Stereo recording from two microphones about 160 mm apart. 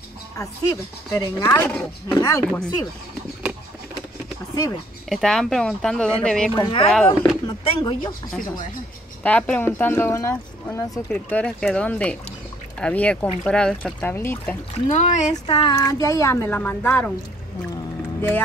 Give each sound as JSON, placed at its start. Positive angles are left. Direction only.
{"t": 0.4, "sound": "speech", "side_deg": 20}
{"t": 5.1, "sound": "speech", "side_deg": 5}
{"t": 6.5, "sound": "speech", "side_deg": 30}
{"t": 9.2, "sound": "speech", "side_deg": 10}
{"t": 14.9, "sound": "speech", "side_deg": 45}
{"t": 15.4, "sound": "speech", "side_deg": 30}
{"t": 15.7, "sound": "speech", "side_deg": 20}